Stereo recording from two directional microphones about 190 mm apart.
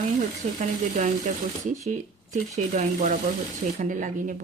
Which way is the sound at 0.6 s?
40° right (ahead or behind).